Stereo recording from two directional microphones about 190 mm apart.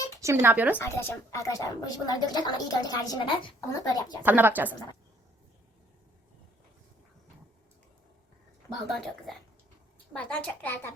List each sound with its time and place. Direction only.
0.2 s speech: 15° right (ahead or behind)
0.8 s speech: 15° left (ahead or behind)
4.2 s speech: 10° right (ahead or behind)
8.9 s a woman's voice: centre (ahead or behind)